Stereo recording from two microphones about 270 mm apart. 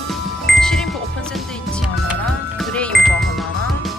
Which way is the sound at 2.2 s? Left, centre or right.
Centre.